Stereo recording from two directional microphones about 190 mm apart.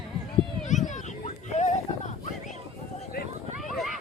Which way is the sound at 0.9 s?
40° left (ahead or behind).